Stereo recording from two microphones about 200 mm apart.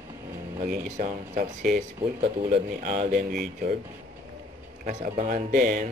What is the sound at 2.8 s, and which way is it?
Speech, 40° right (ahead or behind).